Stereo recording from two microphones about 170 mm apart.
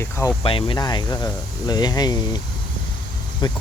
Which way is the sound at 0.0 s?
15° left (ahead or behind).